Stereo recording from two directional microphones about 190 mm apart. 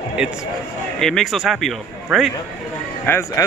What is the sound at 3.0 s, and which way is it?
Speech, 10° left (ahead or behind).